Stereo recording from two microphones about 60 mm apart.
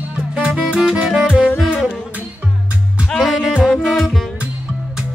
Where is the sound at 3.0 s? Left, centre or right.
Centre.